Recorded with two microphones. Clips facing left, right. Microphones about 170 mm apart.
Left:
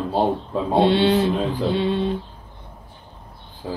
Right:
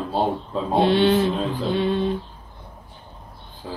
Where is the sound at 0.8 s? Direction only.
30° left (ahead or behind).